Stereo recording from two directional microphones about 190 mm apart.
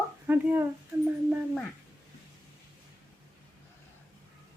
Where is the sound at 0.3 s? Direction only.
10° right (ahead or behind).